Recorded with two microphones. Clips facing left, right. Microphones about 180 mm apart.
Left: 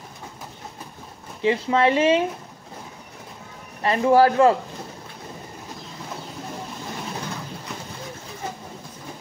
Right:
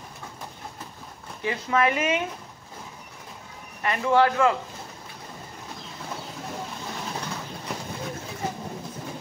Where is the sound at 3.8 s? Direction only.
30° left (ahead or behind).